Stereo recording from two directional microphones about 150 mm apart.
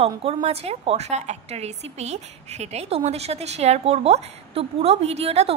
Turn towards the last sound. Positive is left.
turn(degrees=-45)  # may be behind; listen again after turning